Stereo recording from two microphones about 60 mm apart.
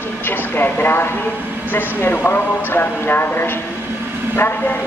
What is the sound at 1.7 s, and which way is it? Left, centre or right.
Vehicle, left.